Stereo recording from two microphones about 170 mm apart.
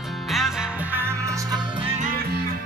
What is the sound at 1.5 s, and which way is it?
Music, 5° right (ahead or behind).